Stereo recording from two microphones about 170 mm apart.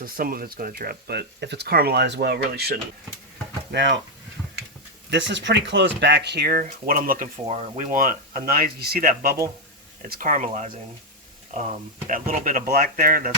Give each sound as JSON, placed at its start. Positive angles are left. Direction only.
{"t": 0.0, "sound": "speech", "side_deg": -60}
{"t": 3.7, "sound": "speech", "side_deg": -90}
{"t": 5.1, "sound": "speech", "side_deg": -90}
{"t": 7.4, "sound": "speech", "side_deg": -40}
{"t": 10.0, "sound": "speech", "side_deg": -50}
{"t": 12.0, "sound": "speech", "side_deg": -50}